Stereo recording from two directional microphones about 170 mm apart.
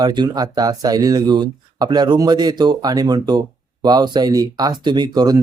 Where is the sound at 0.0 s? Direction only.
25° right (ahead or behind).